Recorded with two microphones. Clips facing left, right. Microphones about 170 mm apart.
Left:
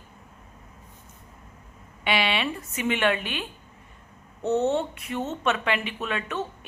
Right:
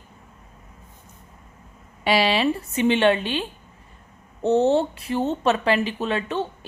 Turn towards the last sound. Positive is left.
turn(degrees=-30)  # may be behind; listen again after turning